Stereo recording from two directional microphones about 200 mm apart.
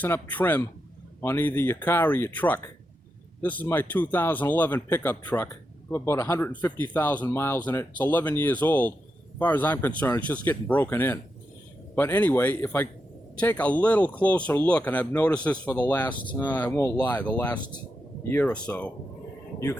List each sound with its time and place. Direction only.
0.0 s speech: 10° left (ahead or behind)
16.0 s speech: 25° left (ahead or behind)
16.3 s speech: 10° left (ahead or behind)